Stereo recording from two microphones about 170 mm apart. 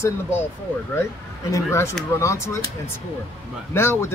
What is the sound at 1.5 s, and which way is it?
Speech, 15° left (ahead or behind).